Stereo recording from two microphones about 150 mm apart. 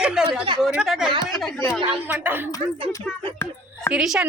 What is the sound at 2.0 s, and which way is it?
Speech, 10° right (ahead or behind).